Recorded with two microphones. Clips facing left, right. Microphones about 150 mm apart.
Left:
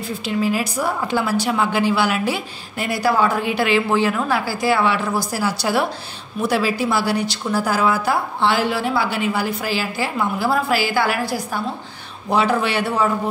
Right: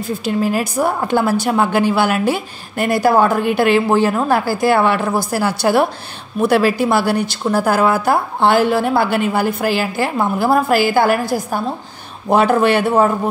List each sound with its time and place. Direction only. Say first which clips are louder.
0.2 s a woman's voice: right 2 dB; 50° right (ahead or behind)